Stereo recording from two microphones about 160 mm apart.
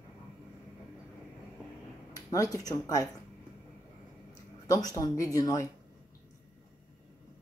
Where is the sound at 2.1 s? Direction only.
20° left (ahead or behind).